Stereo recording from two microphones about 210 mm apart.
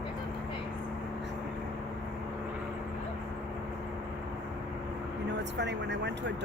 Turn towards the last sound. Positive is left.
turn(degrees=-55)  # may be behind; listen again after turning